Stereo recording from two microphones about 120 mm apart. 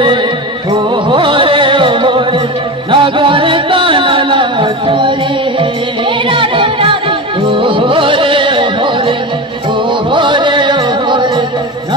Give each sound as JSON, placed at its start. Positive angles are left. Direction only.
{"t": 0.7, "sound": "music", "side_deg": -40}